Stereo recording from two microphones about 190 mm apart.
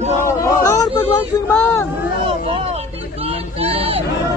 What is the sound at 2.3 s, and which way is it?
Hubbub, 30° right (ahead or behind).